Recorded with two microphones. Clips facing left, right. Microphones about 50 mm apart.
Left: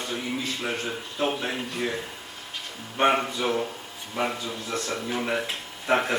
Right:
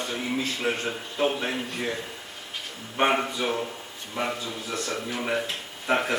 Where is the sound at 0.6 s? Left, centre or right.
Centre.